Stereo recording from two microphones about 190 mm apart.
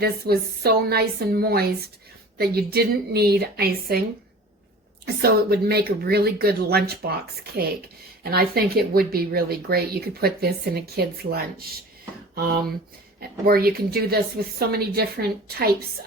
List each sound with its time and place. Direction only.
0.0 s speech: 55° right (ahead or behind)
5.0 s speech: 55° right (ahead or behind)